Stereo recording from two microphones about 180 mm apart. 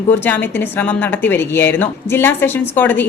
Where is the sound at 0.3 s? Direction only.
10° left (ahead or behind).